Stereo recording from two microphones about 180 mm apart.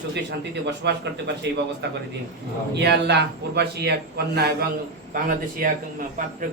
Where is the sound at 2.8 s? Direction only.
70° right (ahead or behind).